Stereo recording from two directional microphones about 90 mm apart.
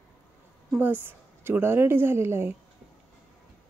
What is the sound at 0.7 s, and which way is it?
Speech, 20° right (ahead or behind).